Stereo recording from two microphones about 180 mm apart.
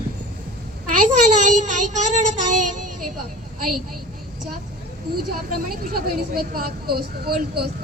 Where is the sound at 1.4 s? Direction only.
40° right (ahead or behind).